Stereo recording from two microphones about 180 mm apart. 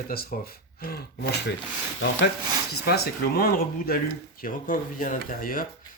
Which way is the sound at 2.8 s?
60° left (ahead or behind).